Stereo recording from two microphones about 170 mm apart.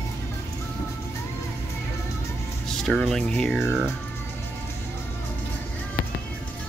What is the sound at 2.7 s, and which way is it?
Speech, centre (ahead or behind).